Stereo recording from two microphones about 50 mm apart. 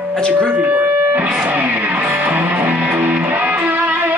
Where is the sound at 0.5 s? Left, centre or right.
Right.